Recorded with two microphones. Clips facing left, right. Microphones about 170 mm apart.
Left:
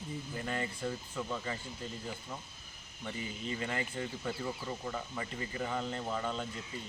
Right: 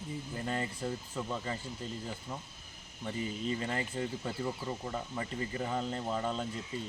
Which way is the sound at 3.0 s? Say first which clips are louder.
Right 4 dB; 35° right (ahead or behind).